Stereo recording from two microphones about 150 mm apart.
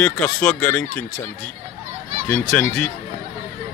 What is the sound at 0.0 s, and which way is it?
Speech, 15° left (ahead or behind).